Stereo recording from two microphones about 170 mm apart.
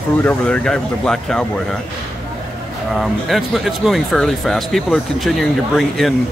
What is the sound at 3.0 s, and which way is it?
Speech, centre (ahead or behind).